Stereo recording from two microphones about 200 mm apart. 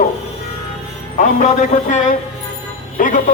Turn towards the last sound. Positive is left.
turn(degrees=40)  # may be behind; listen again after turning